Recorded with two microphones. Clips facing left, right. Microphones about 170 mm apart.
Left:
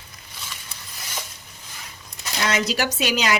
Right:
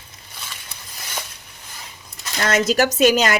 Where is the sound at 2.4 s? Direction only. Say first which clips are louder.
Right 6 dB; 50° right (ahead or behind).